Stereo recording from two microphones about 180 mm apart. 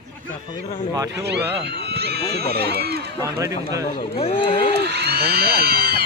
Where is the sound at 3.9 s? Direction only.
30° left (ahead or behind).